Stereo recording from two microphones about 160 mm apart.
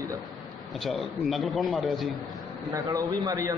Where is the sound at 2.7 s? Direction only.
20° right (ahead or behind).